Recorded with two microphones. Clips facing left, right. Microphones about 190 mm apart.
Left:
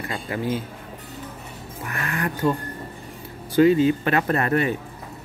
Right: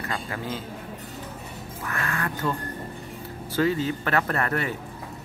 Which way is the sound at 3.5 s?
15° left (ahead or behind).